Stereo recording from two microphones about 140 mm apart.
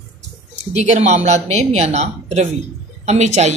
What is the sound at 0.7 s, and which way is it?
A woman's voice, 55° right (ahead or behind).